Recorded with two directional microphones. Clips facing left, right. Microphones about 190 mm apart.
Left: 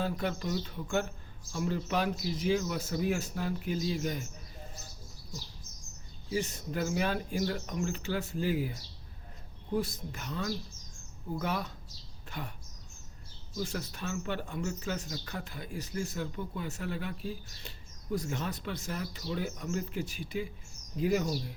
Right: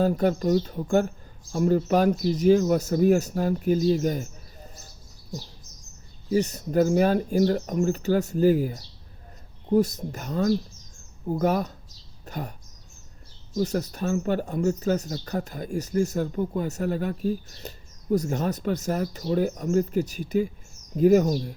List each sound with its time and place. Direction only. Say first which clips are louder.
0.0 s speech: right 11 dB; 40° right (ahead or behind)
6.3 s speech: right 11 dB; 40° right (ahead or behind)